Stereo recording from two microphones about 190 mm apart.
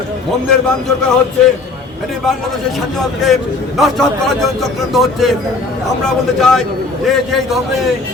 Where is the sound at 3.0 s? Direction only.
Centre (ahead or behind).